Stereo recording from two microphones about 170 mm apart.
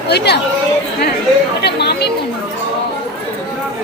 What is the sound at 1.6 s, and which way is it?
Chatter, 75° left (ahead or behind).